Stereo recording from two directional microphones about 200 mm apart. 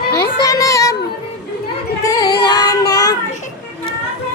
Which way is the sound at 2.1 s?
20° left (ahead or behind).